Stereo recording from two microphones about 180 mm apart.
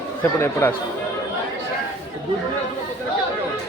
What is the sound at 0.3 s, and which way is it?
Speech, 15° left (ahead or behind).